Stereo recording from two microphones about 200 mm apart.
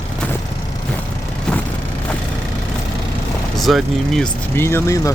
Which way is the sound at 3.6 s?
Centre (ahead or behind).